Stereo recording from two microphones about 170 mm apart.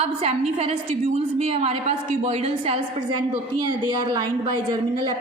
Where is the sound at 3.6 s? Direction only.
25° right (ahead or behind).